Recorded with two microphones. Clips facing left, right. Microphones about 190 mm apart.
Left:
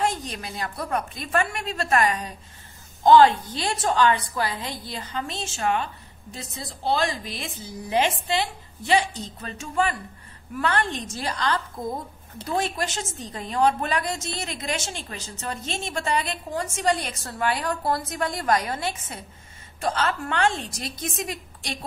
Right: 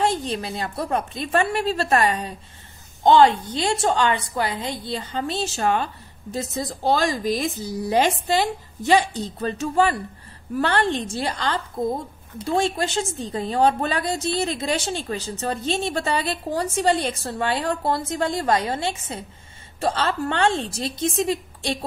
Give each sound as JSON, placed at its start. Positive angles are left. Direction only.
{"t": 0.0, "sound": "a woman's voice", "side_deg": -30}